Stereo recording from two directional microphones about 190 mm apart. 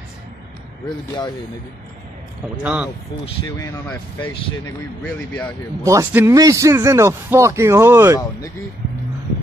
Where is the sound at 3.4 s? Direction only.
20° left (ahead or behind).